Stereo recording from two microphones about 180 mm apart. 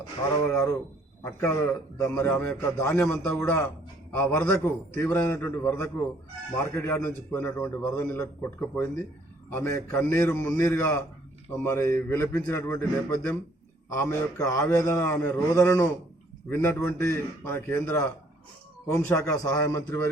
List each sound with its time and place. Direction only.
0.4 s a man's voice: 20° left (ahead or behind)